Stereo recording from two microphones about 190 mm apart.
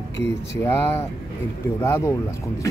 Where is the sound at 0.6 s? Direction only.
10° left (ahead or behind).